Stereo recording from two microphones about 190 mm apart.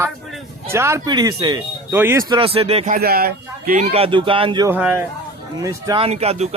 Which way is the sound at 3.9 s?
30° right (ahead or behind).